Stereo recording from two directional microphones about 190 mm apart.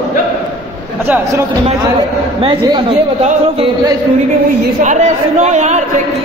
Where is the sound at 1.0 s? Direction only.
10° right (ahead or behind).